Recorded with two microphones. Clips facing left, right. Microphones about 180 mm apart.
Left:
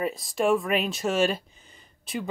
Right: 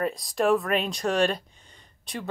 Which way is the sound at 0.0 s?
Centre (ahead or behind).